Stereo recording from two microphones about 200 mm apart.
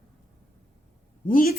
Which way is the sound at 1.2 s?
45° left (ahead or behind).